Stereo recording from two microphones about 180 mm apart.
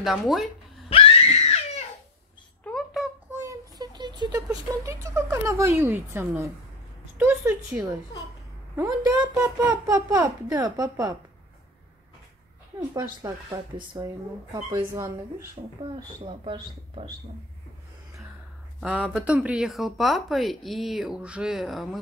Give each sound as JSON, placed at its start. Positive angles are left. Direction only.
{"t": 0.0, "sound": "speech", "side_deg": 0}
{"t": 0.8, "sound": "screaming", "side_deg": 35}
{"t": 2.6, "sound": "a sound", "side_deg": 0}
{"t": 3.3, "sound": "speech", "side_deg": -20}
{"t": 13.2, "sound": "speech", "side_deg": -15}
{"t": 16.3, "sound": "speech", "side_deg": -30}
{"t": 18.8, "sound": "speech", "side_deg": 0}